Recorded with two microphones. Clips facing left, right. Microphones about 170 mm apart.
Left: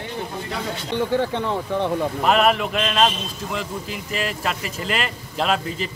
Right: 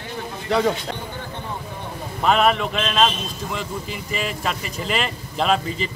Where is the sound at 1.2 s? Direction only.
70° left (ahead or behind).